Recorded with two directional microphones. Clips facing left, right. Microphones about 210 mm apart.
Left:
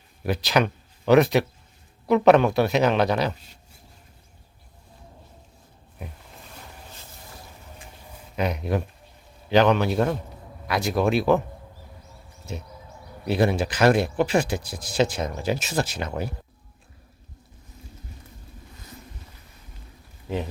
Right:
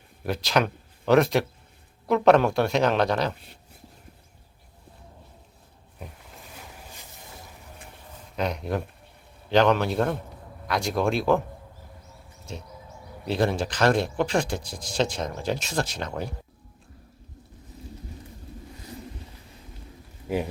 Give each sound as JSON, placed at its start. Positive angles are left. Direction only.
{"t": 0.3, "sound": "speech", "side_deg": 0}
{"t": 3.3, "sound": "speech", "side_deg": -60}
{"t": 6.5, "sound": "boat", "side_deg": -10}
{"t": 8.4, "sound": "speech", "side_deg": 5}
{"t": 12.5, "sound": "speech", "side_deg": 5}